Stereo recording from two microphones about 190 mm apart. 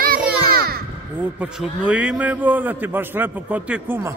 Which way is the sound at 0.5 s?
55° right (ahead or behind).